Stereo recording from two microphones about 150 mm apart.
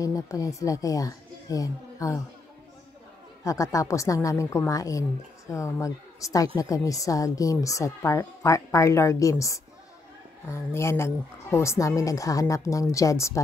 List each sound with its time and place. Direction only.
0.0 s speech: 20° left (ahead or behind)
3.4 s a woman's voice: 20° left (ahead or behind)